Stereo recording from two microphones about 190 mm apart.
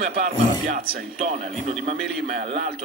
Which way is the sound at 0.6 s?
45° right (ahead or behind).